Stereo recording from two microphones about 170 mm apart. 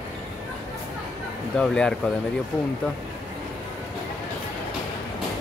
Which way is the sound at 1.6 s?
5° left (ahead or behind).